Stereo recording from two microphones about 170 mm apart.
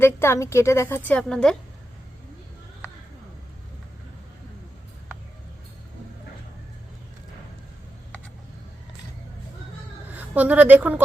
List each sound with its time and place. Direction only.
0.0 s a woman's voice: 15° left (ahead or behind)
10.2 s speech: 10° right (ahead or behind)